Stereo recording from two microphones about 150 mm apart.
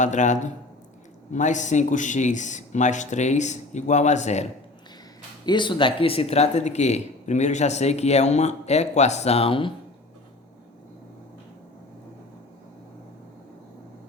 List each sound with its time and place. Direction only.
0.0 s speech: 55° left (ahead or behind)
5.5 s speech: 30° left (ahead or behind)